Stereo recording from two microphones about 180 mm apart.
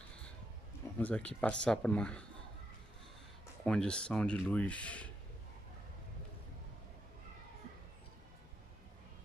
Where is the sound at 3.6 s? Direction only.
5° left (ahead or behind).